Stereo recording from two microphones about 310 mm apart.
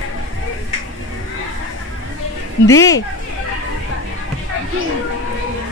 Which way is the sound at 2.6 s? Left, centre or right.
Centre.